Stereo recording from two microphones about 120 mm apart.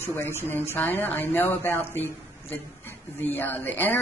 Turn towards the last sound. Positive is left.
turn(degrees=15)  # may be behind; listen again after turning